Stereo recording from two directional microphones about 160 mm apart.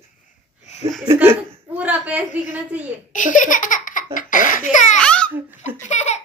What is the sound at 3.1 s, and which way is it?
Speech, 55° left (ahead or behind).